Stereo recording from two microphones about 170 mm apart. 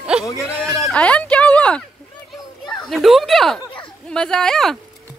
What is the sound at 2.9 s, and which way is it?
Speech, centre (ahead or behind).